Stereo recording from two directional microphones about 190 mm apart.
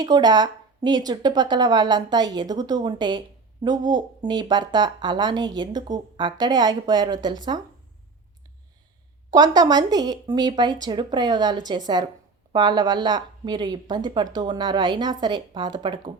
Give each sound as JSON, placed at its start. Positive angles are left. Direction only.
{"t": 0.0, "sound": "speech", "side_deg": -20}
{"t": 9.3, "sound": "speech", "side_deg": -20}